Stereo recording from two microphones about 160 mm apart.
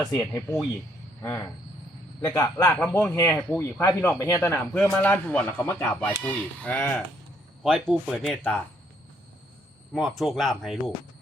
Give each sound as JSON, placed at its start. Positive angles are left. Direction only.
{"t": 0.1, "sound": "speech", "side_deg": 20}
{"t": 9.9, "sound": "speech", "side_deg": 0}